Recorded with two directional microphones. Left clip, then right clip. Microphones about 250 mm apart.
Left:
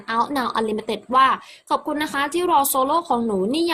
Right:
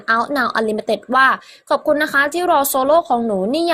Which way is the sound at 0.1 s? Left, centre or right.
Centre.